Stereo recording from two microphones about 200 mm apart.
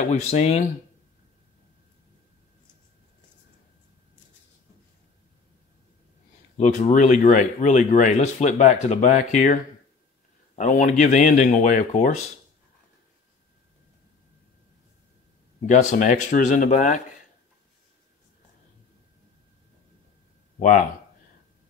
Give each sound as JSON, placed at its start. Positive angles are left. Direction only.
{"t": 0.0, "sound": "speech", "side_deg": 30}
{"t": 6.6, "sound": "speech", "side_deg": 35}
{"t": 15.6, "sound": "speech", "side_deg": 40}
{"t": 20.5, "sound": "speech", "side_deg": 40}